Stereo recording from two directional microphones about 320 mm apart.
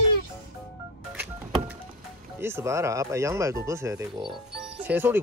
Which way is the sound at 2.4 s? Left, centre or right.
Centre.